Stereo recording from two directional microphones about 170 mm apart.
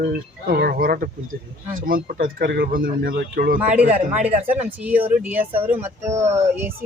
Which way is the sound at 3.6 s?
10° right (ahead or behind).